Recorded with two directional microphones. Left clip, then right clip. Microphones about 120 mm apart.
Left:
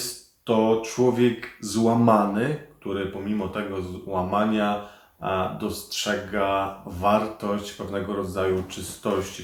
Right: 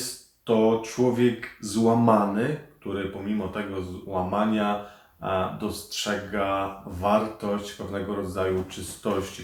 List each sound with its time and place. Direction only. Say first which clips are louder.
0.4 s speech: left 1 dB; 25° left (ahead or behind)